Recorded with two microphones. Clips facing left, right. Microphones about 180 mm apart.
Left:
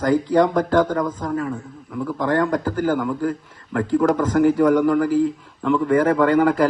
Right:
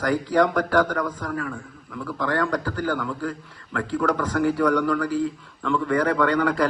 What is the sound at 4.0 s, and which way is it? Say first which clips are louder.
A man's voice: left 5 dB; 20° left (ahead or behind).